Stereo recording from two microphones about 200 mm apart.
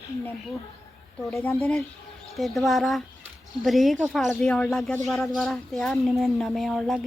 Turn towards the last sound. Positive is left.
turn(degrees=0)  # may be behind; listen again after turning